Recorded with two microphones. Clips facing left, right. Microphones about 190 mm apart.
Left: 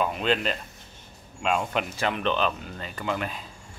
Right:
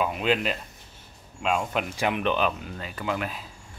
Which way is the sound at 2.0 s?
15° right (ahead or behind).